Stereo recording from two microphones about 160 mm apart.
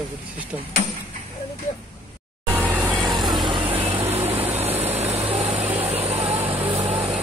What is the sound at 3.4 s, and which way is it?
Vehicle, 30° right (ahead or behind).